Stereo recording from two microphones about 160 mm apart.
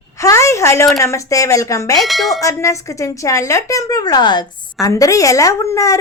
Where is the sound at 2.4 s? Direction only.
20° left (ahead or behind).